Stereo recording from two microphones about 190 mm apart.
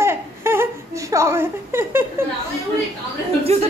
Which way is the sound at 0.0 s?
15° right (ahead or behind).